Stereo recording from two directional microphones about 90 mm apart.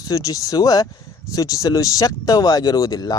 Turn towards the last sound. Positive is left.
turn(degrees=45)  # may be behind; listen again after turning